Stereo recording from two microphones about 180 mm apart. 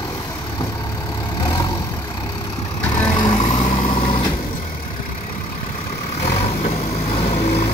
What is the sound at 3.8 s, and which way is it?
Vehicle, 30° left (ahead or behind).